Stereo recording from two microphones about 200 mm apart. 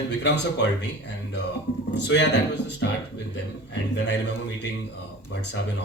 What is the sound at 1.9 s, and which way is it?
Speech, 60° left (ahead or behind).